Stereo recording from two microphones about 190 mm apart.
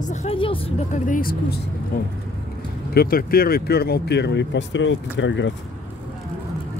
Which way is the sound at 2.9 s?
50° left (ahead or behind).